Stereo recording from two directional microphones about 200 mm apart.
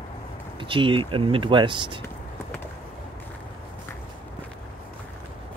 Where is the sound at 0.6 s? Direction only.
25° right (ahead or behind).